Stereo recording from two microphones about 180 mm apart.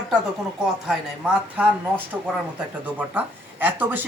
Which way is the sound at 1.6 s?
10° right (ahead or behind).